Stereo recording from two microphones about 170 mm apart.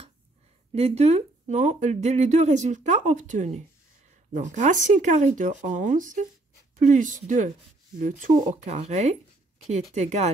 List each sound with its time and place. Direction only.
0.7 s speech: 40° right (ahead or behind)